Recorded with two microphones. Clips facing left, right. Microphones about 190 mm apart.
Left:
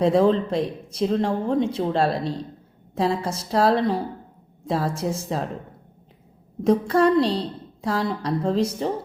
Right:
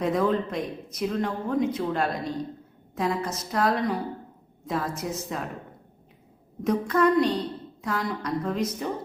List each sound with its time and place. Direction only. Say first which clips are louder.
0.0 s a woman's voice: left 6 dB; 30° left (ahead or behind)
6.6 s a woman's voice: left 4 dB; 30° left (ahead or behind)